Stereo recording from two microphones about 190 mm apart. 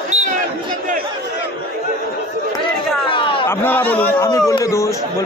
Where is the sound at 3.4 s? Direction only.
10° left (ahead or behind).